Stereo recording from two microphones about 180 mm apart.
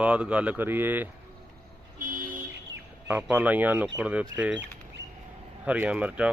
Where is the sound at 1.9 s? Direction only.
50° right (ahead or behind).